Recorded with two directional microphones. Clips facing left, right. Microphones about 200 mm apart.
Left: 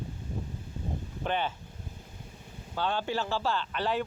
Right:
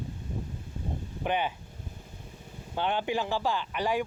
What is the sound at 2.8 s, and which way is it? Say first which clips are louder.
Speech: right 2 dB; 20° right (ahead or behind).